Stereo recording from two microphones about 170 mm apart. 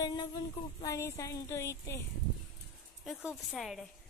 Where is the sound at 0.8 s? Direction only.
15° left (ahead or behind).